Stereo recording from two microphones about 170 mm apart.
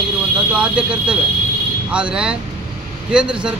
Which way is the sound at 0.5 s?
5° right (ahead or behind).